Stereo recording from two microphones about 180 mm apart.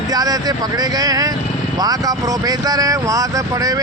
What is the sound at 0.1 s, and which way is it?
Speech, 20° right (ahead or behind).